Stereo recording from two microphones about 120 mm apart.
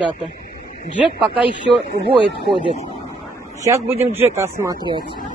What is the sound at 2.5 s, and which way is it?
Speech, 60° right (ahead or behind).